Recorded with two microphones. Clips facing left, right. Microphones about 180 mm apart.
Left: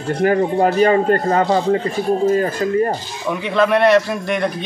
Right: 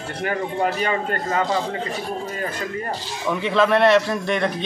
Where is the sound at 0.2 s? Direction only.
40° left (ahead or behind).